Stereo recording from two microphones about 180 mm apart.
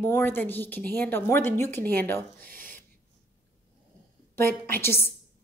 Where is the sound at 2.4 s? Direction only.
50° right (ahead or behind).